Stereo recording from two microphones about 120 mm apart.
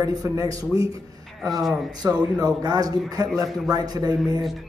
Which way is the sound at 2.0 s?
30° right (ahead or behind).